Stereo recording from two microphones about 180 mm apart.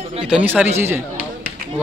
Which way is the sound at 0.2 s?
5° right (ahead or behind).